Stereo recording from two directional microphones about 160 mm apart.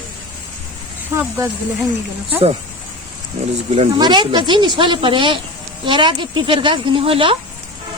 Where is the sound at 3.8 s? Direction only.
25° right (ahead or behind).